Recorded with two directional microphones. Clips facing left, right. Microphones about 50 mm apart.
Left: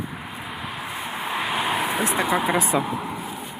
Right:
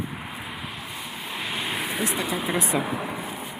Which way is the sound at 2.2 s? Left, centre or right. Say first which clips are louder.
Left 6 dB; left.